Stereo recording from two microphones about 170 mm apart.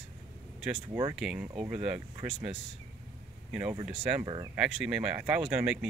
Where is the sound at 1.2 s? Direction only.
5° right (ahead or behind).